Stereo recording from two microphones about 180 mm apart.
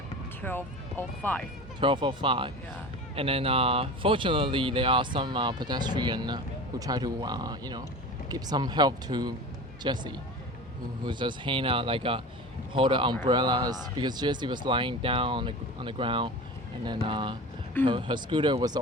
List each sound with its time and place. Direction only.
0.4 s speech: 10° left (ahead or behind)
1.8 s speech: 25° right (ahead or behind)